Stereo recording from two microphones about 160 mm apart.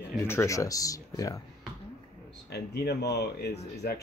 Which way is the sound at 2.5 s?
90° left.